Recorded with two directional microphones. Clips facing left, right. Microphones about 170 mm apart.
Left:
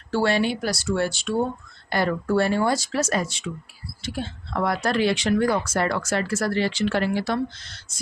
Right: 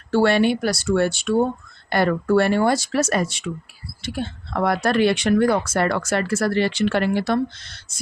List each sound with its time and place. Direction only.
0.1 s speech: 60° right (ahead or behind)